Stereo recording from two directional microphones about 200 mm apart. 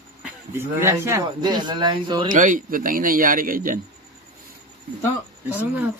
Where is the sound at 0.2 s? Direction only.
10° right (ahead or behind).